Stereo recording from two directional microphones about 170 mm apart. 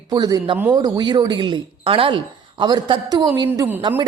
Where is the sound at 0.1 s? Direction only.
25° right (ahead or behind).